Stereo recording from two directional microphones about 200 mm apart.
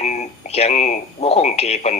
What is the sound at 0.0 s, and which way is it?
Speech, 35° left (ahead or behind).